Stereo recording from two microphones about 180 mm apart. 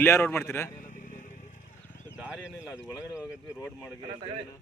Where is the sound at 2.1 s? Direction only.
5° right (ahead or behind).